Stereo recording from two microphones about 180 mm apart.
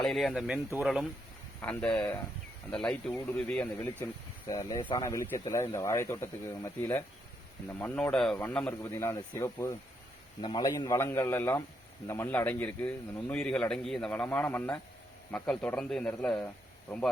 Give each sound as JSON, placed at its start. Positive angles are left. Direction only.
{"t": 0.0, "sound": "speech", "side_deg": 0}
{"t": 1.6, "sound": "a man's voice", "side_deg": 5}